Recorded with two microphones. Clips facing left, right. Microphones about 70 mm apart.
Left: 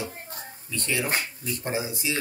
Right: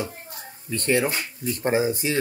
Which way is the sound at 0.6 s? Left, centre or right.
Right.